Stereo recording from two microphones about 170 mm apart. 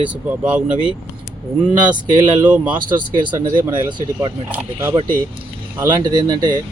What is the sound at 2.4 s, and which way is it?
Speech, 10° right (ahead or behind).